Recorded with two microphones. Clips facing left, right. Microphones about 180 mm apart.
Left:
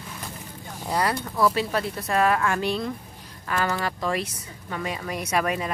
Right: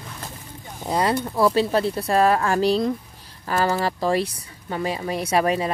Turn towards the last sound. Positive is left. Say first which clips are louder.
# right 5 dB
turn(degrees=-30)  # may be behind; listen again after turning